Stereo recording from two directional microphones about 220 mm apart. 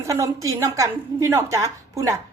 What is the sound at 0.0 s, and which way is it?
A woman's voice, 15° right (ahead or behind).